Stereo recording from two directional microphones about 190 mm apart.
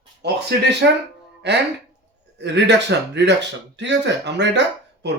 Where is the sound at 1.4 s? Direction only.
65° right (ahead or behind).